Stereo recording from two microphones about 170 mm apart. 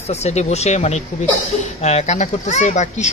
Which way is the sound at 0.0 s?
40° left (ahead or behind).